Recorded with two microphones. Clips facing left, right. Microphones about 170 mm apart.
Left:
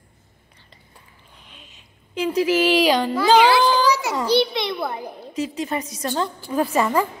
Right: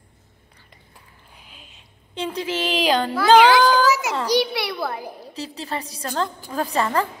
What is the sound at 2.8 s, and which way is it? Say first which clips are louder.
Music: left 2 dB; 5° left (ahead or behind).